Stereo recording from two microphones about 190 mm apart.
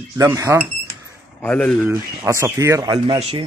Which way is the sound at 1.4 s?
5° left (ahead or behind).